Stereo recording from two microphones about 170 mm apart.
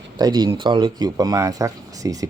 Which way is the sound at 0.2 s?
25° right (ahead or behind).